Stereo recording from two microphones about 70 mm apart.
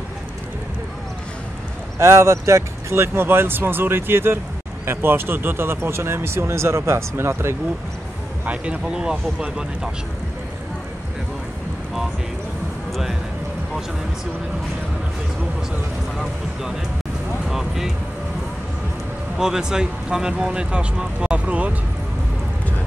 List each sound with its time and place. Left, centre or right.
2.0 s speech: right
8.5 s speech: centre
17.5 s speech: centre
19.3 s speech: centre